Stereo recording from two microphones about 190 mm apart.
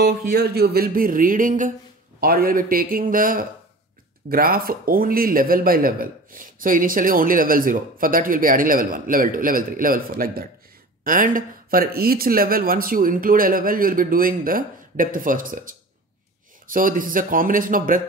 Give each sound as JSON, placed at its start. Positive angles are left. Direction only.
{"t": 0.0, "sound": "a man's voice", "side_deg": -55}